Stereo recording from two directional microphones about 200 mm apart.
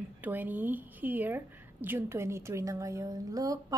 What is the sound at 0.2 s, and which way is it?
A woman's voice, 10° right (ahead or behind).